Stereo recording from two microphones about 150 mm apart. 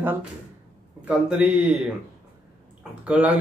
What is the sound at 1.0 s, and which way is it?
Speech, 10° right (ahead or behind).